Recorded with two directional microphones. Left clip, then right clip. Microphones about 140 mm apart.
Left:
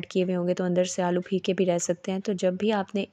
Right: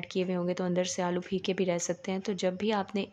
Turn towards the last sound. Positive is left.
turn(degrees=30)  # may be behind; listen again after turning